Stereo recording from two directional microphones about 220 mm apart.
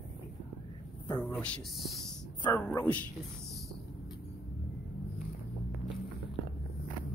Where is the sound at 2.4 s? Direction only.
15° left (ahead or behind).